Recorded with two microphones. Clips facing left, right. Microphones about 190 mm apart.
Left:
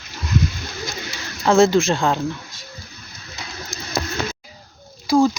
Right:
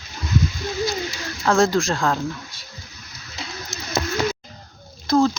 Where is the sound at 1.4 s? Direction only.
25° left (ahead or behind).